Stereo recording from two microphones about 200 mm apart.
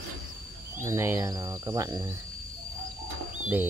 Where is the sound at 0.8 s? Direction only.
10° right (ahead or behind).